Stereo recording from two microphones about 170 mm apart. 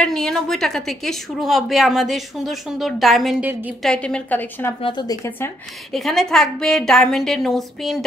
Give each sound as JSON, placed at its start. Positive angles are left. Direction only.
{"t": 0.0, "sound": "a woman's voice", "side_deg": 5}
{"t": 3.8, "sound": "a woman's voice", "side_deg": 5}
{"t": 4.8, "sound": "a woman's voice", "side_deg": 25}
{"t": 5.9, "sound": "a woman's voice", "side_deg": 0}